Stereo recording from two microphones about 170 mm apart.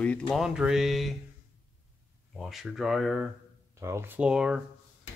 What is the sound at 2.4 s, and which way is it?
Speech, centre (ahead or behind).